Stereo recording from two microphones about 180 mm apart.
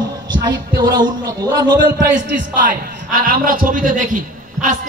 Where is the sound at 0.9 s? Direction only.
25° right (ahead or behind).